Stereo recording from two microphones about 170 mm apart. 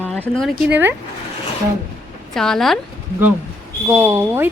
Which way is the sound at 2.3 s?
5° left (ahead or behind).